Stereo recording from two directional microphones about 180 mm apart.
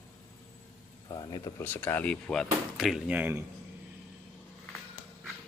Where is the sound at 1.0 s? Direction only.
25° left (ahead or behind).